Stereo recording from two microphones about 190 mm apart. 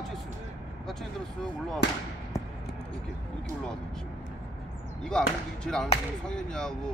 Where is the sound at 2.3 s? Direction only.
15° left (ahead or behind).